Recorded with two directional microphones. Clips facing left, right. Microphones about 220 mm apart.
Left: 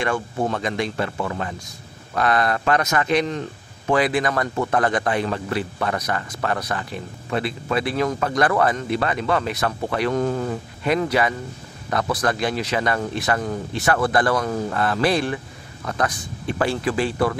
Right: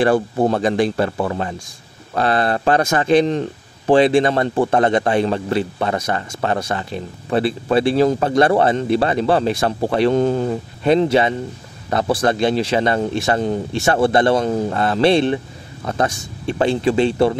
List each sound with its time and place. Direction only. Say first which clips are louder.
0.0 s a man's voice: right 8 dB; 35° right (ahead or behind)